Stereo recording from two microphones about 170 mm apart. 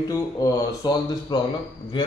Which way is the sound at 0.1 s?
20° left (ahead or behind).